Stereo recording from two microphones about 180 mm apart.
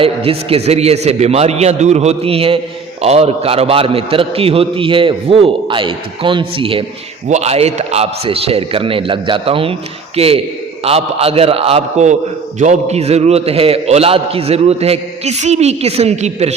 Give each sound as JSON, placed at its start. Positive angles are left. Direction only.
{"t": 0.0, "sound": "a man's voice", "side_deg": -30}